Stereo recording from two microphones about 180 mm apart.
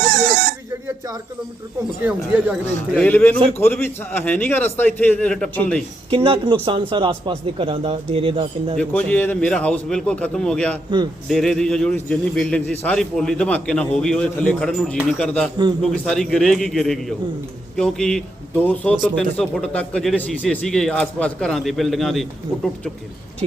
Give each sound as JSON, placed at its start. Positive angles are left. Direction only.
{"t": 2.0, "sound": "speech", "side_deg": -5}
{"t": 2.9, "sound": "a man's voice", "side_deg": 10}
{"t": 6.1, "sound": "a man's voice", "side_deg": -30}
{"t": 8.8, "sound": "a man's voice", "side_deg": 5}